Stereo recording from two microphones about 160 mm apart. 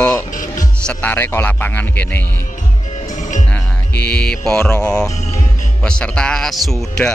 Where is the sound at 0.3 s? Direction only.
55° left (ahead or behind).